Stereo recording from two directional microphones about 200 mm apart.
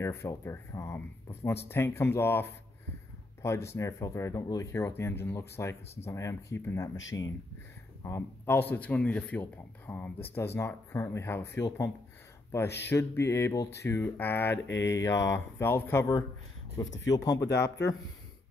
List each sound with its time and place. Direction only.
0.0 s speech: 15° left (ahead or behind)
17.5 s speech: 55° left (ahead or behind)